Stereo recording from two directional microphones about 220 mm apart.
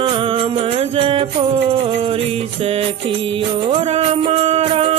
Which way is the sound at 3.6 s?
25° right (ahead or behind).